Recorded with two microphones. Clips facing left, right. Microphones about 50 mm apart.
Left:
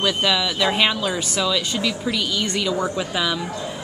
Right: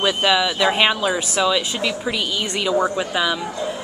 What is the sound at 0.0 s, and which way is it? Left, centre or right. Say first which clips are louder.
A woman's voice: right 3 dB; centre.